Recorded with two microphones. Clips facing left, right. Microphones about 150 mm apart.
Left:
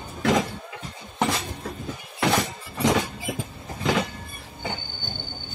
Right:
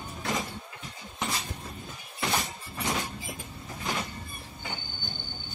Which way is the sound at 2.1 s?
80° left.